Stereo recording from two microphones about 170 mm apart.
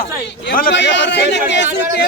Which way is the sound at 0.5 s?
75° left (ahead or behind).